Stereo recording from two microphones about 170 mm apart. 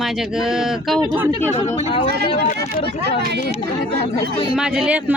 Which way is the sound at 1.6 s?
35° left (ahead or behind).